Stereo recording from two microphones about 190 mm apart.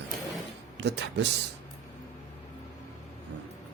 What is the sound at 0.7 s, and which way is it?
Speech, 65° right (ahead or behind).